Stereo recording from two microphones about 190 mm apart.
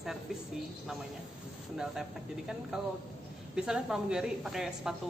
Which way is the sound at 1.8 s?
5° right (ahead or behind).